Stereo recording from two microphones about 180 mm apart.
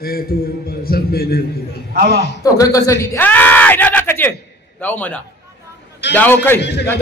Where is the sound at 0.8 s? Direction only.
55° left (ahead or behind).